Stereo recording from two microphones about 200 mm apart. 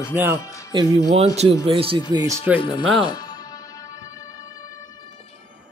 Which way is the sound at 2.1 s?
15° right (ahead or behind).